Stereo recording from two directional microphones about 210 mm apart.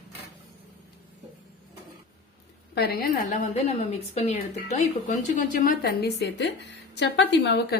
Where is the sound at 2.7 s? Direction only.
50° left (ahead or behind).